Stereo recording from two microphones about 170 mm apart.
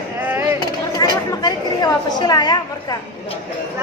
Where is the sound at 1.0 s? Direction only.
25° left (ahead or behind).